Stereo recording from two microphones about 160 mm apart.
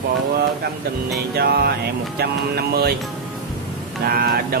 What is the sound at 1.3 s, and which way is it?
Music, 80° right.